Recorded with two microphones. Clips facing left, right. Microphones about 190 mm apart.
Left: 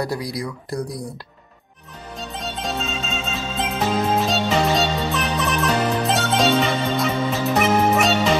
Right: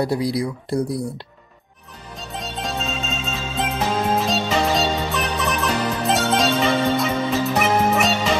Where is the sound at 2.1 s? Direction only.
Centre (ahead or behind).